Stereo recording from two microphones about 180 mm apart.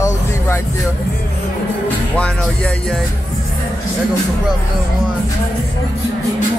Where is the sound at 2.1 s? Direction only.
5° left (ahead or behind).